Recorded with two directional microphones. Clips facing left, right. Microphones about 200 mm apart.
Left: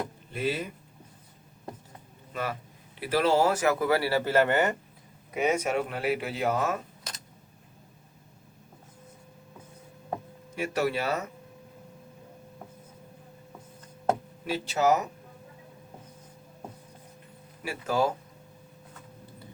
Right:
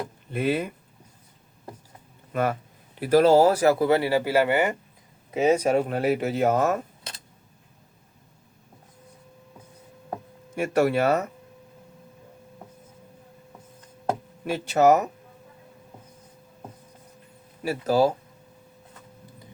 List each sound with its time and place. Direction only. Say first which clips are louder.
0.3 s speech: right 5 dB; 55° right (ahead or behind)
2.3 s speech: right 8 dB; 50° right (ahead or behind); by 4.8 s 10° right (ahead or behind)
5.3 s speech: right 6 dB; 30° right (ahead or behind); by 6.8 s 45° right (ahead or behind)
10.5 s speech: right 6 dB; 55° right (ahead or behind)
14.4 s speech: right 6 dB; 55° right (ahead or behind)
17.6 s speech: right 6 dB; 40° right (ahead or behind)